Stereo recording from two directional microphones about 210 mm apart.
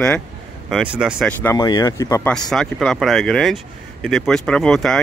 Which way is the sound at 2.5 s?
Centre (ahead or behind).